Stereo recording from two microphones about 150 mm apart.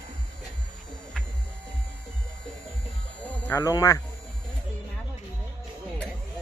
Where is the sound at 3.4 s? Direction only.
20° left (ahead or behind).